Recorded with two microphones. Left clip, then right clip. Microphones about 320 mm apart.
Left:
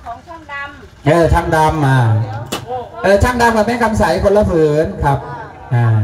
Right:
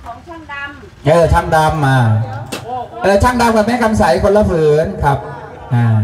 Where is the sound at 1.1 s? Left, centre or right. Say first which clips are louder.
Right 1 dB; centre.